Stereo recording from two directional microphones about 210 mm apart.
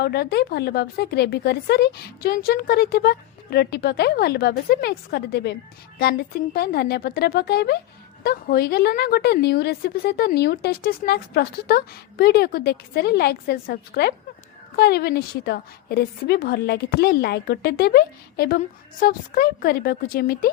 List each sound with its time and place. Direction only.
0.0 s a woman's voice: 50° left (ahead or behind)